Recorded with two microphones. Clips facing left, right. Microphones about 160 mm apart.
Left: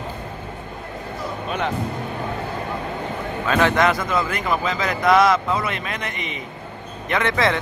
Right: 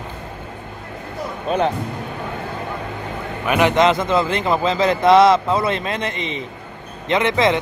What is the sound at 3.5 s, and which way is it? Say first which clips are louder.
A man's voice: right 3 dB; 15° right (ahead or behind).